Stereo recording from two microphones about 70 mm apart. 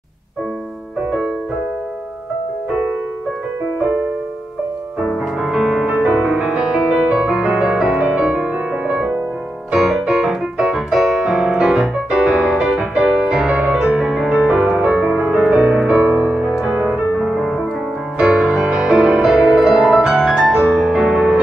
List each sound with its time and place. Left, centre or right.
5.4 s music: centre
9.8 s music: centre
14.8 s music: centre
16.2 s music: right
16.4 s music: centre
17.2 s music: centre